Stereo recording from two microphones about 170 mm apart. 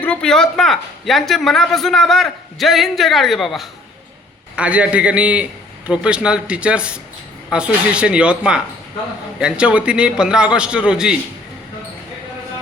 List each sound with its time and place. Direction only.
0.0 s a woman's voice: 5° left (ahead or behind)